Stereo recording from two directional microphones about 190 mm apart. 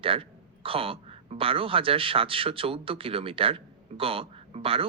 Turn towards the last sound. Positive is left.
turn(degrees=-30)  # may be behind; listen again after turning